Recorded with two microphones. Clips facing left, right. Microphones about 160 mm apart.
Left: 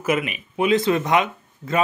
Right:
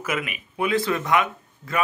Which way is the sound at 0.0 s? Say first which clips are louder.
Left 6 dB; 25° left (ahead or behind).